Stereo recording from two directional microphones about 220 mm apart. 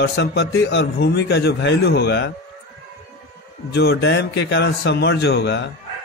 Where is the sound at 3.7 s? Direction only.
50° left (ahead or behind).